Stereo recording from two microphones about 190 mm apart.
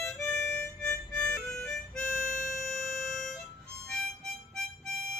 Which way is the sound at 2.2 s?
45° left (ahead or behind).